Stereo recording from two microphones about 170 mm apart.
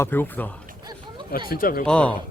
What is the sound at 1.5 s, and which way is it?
Speech, 55° left (ahead or behind).